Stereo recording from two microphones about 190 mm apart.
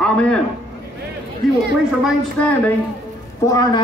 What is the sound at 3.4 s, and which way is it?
Speech, 20° left (ahead or behind).